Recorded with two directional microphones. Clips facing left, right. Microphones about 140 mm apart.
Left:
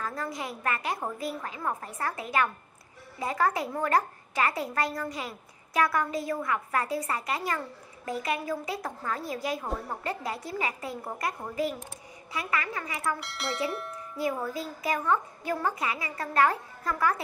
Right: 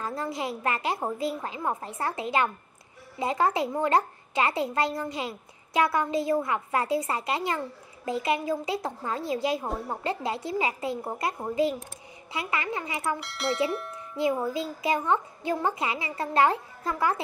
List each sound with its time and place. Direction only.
0.0 s a child's voice: 25° right (ahead or behind)
13.2 s speech: centre (ahead or behind)
14.1 s a child's voice: 25° right (ahead or behind)